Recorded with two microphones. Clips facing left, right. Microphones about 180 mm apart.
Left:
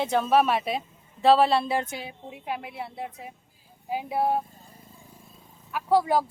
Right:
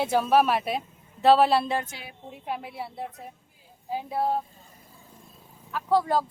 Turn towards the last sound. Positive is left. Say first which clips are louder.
# left 1 dB
turn(degrees=10)  # may be behind; listen again after turning